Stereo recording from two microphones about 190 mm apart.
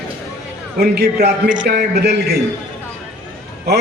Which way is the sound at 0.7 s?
55° right (ahead or behind).